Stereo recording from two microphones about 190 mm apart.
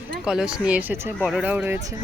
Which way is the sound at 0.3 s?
5° right (ahead or behind).